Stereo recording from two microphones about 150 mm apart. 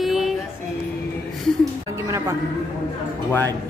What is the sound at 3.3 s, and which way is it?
Speech, 15° left (ahead or behind).